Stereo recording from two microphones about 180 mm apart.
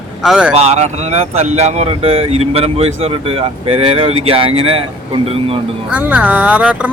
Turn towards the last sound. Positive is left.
turn(degrees=-5)  # may be behind; listen again after turning